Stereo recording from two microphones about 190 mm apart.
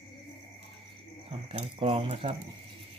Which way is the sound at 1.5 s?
30° right (ahead or behind).